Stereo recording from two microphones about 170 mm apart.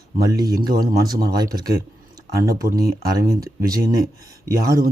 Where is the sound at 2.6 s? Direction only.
60° right (ahead or behind).